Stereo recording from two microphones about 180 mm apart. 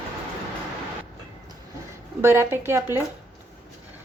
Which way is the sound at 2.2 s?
15° right (ahead or behind).